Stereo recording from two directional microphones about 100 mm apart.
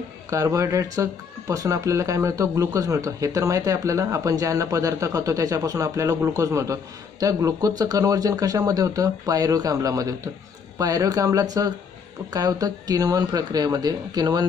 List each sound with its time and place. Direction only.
0.3 s speech: 35° right (ahead or behind)